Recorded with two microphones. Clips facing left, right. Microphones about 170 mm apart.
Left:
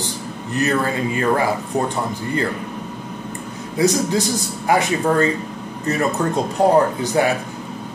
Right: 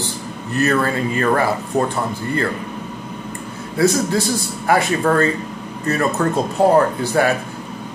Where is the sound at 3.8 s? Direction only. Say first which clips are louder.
Right 1 dB; 15° left (ahead or behind).